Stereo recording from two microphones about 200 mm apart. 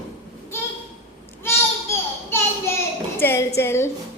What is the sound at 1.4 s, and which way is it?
Children playing, 10° left (ahead or behind).